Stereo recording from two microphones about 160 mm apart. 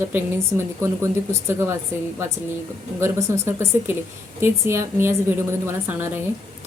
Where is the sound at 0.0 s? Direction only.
15° right (ahead or behind).